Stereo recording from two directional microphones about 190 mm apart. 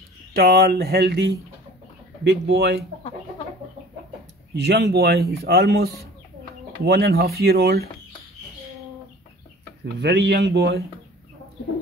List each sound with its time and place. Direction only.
0.3 s a man's voice: 55° right (ahead or behind)
2.2 s a man's voice: 65° right (ahead or behind)
4.6 s a man's voice: 60° right (ahead or behind)
6.9 s a man's voice: 60° right (ahead or behind)
9.9 s a man's voice: 65° right (ahead or behind)